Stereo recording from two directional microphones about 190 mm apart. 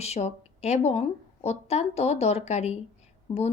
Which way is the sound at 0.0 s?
35° left (ahead or behind).